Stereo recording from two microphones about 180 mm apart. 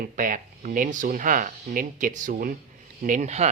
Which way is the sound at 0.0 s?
45° right (ahead or behind).